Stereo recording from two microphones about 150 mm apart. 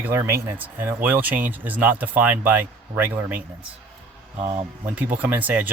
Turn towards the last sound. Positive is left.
turn(degrees=-10)  # may be behind; listen again after turning